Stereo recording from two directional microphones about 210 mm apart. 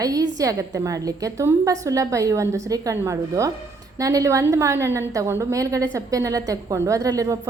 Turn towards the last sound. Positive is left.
turn(degrees=-15)  # may be behind; listen again after turning